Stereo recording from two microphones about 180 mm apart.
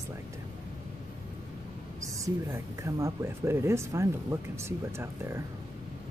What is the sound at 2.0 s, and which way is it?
Speech, 15° right (ahead or behind).